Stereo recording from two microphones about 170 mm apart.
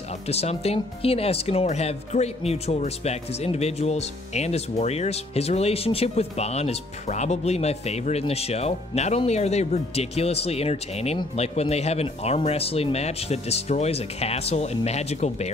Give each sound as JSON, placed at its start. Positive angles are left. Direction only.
{"t": 0.3, "sound": "speech", "side_deg": 40}